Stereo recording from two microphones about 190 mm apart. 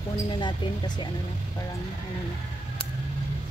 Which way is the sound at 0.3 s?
25° left (ahead or behind).